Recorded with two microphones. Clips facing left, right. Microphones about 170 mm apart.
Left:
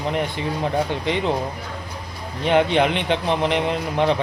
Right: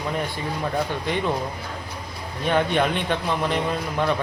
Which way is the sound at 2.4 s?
20° left (ahead or behind).